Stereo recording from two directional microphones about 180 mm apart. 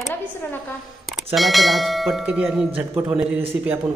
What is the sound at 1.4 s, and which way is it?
A man's voice, centre (ahead or behind).